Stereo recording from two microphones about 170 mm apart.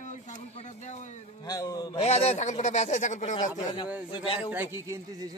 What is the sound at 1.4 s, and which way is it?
Speech, 20° left (ahead or behind).